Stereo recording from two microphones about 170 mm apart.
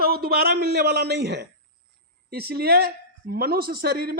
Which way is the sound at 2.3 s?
65° right (ahead or behind).